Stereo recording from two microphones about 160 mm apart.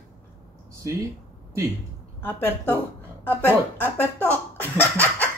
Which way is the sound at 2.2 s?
10° left (ahead or behind).